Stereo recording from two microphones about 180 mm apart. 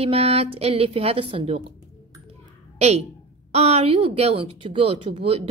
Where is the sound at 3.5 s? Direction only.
35° right (ahead or behind).